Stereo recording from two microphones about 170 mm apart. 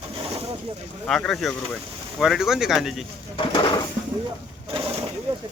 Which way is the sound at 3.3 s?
30° left (ahead or behind).